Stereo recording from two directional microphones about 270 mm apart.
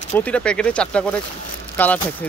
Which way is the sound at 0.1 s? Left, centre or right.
Centre.